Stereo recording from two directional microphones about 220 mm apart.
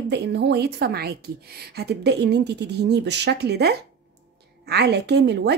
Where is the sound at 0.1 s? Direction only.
50° right (ahead or behind).